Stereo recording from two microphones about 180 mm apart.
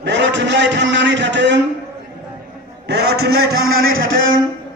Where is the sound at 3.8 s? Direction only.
90° right.